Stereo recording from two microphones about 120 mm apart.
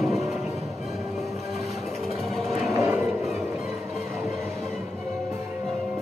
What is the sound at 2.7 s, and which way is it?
Vehicle, 25° right (ahead or behind).